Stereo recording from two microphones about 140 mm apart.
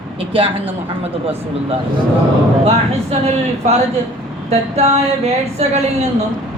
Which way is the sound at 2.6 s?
45° right (ahead or behind).